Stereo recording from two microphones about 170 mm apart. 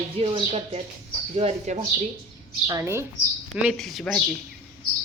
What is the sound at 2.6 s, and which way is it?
Speech, 20° right (ahead or behind).